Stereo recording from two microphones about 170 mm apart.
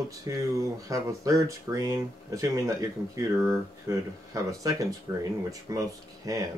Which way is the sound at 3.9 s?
20° right (ahead or behind).